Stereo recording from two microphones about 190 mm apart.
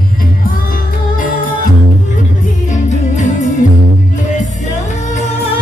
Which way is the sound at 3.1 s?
40° left (ahead or behind).